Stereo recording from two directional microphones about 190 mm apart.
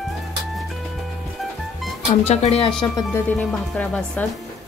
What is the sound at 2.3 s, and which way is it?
Speech, 35° left (ahead or behind).